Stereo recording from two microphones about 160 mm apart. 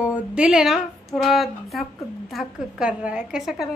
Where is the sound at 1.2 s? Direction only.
Centre (ahead or behind).